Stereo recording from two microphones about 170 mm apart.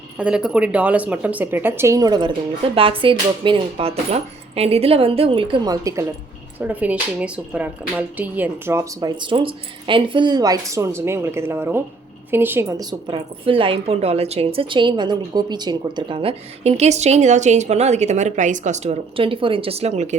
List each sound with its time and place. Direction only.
0.2 s a woman's voice: 5° right (ahead or behind)
6.6 s a woman's voice: 10° right (ahead or behind); by 20.1 s 40° right (ahead or behind)